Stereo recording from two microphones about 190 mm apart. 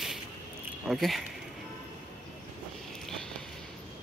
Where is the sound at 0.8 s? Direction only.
Centre (ahead or behind).